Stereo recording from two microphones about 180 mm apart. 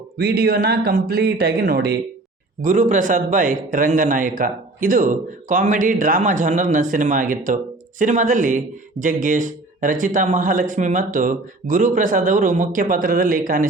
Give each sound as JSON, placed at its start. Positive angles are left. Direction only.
{"t": 0.2, "sound": "speech", "side_deg": -60}
{"t": 2.6, "sound": "a man's voice", "side_deg": -45}